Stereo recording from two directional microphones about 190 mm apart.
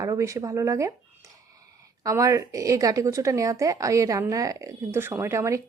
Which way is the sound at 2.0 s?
15° right (ahead or behind).